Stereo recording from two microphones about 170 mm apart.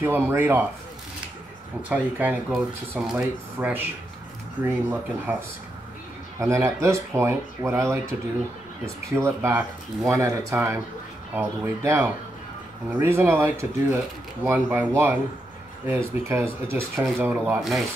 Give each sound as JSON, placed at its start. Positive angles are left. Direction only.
{"t": 0.0, "sound": "speech", "side_deg": -15}
{"t": 1.8, "sound": "speech", "side_deg": -10}
{"t": 6.4, "sound": "speech", "side_deg": -15}
{"t": 9.1, "sound": "speech", "side_deg": -15}
{"t": 17.6, "sound": "speech", "side_deg": 0}